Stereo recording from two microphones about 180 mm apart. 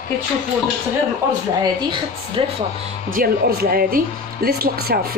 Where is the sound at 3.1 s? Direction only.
55° right (ahead or behind).